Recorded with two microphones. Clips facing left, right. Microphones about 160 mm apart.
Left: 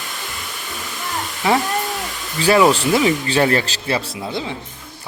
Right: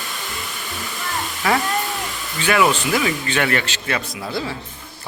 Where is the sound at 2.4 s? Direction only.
35° left (ahead or behind).